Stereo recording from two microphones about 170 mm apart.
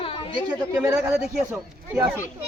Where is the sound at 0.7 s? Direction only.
15° right (ahead or behind).